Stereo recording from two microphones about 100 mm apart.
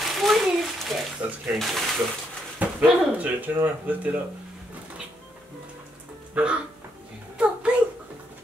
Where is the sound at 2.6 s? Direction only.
15° right (ahead or behind).